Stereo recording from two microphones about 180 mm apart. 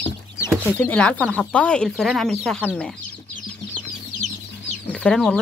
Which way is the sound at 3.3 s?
40° left (ahead or behind).